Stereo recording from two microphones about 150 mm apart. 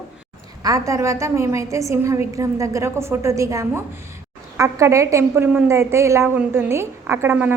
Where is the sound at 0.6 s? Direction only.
20° right (ahead or behind).